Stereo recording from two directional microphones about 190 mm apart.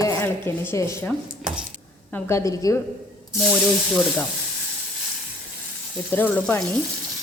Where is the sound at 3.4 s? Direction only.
5° left (ahead or behind).